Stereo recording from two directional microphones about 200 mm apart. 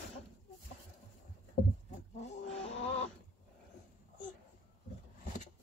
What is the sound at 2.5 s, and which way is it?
Music, 30° left (ahead or behind).